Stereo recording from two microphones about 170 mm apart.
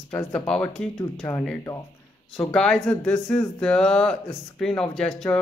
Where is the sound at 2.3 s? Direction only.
5° left (ahead or behind).